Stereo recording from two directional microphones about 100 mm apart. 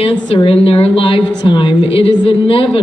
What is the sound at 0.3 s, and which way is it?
A woman's voice, 65° left (ahead or behind).